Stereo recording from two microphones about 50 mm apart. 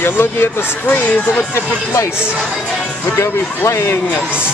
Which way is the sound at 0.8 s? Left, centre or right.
Left.